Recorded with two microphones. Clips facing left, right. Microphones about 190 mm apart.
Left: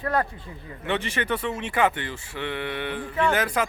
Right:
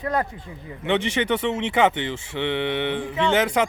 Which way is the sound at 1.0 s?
80° right.